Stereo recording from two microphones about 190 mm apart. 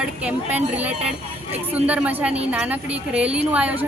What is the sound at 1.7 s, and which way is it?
A woman's voice, 10° right (ahead or behind).